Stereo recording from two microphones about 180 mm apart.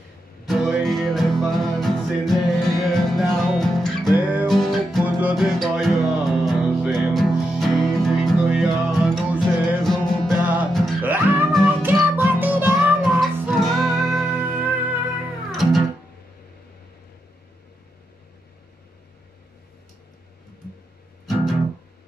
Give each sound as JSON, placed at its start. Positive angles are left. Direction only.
{"t": 0.5, "sound": "music", "side_deg": 0}
{"t": 4.1, "sound": "music", "side_deg": -10}
{"t": 10.4, "sound": "music", "side_deg": -10}
{"t": 13.2, "sound": "music", "side_deg": 0}
{"t": 14.3, "sound": "music", "side_deg": -10}